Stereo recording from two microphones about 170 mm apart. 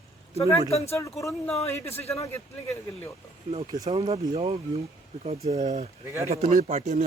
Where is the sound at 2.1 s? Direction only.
20° left (ahead or behind).